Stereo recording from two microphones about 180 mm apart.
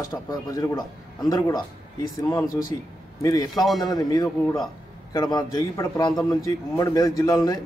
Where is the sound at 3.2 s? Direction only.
20° left (ahead or behind).